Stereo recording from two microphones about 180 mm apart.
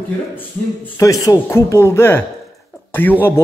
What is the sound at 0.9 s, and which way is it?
Speech, 20° left (ahead or behind).